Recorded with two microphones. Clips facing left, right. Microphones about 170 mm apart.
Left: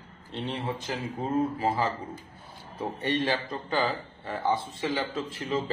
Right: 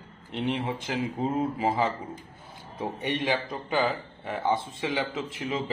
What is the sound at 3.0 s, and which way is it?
A man's voice, 15° right (ahead or behind).